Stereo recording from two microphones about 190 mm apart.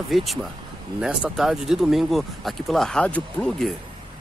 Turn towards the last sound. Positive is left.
turn(degrees=5)  # may be behind; listen again after turning